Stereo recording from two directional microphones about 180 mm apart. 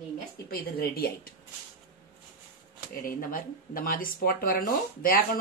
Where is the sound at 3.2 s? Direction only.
50° left (ahead or behind).